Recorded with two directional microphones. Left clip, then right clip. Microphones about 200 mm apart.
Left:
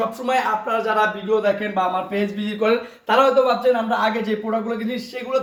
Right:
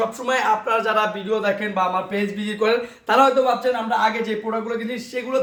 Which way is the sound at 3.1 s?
20° right (ahead or behind).